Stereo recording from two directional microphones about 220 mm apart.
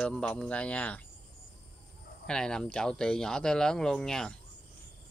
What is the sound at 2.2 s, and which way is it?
Speech, 5° left (ahead or behind).